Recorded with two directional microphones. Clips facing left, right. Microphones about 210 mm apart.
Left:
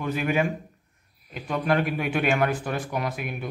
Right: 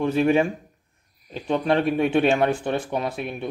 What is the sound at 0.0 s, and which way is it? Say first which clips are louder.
Speech: right 6 dB; 30° right (ahead or behind).